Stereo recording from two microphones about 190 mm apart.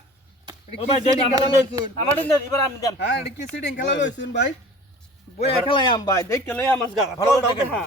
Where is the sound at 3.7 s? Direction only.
65° left (ahead or behind).